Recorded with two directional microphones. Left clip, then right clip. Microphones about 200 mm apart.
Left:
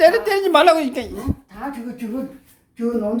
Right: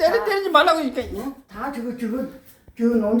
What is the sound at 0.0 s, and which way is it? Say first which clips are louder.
A man's voice: left 5 dB; 40° left (ahead or behind).